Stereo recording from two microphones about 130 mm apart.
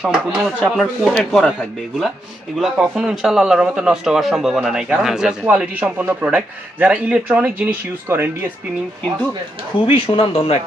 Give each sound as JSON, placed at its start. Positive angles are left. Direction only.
{"t": 0.0, "sound": "a man's voice", "side_deg": -10}
{"t": 2.6, "sound": "a man's voice", "side_deg": -5}
{"t": 9.8, "sound": "speech", "side_deg": 45}